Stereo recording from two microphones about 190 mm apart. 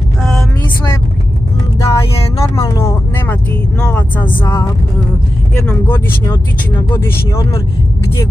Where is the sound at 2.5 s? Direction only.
15° left (ahead or behind).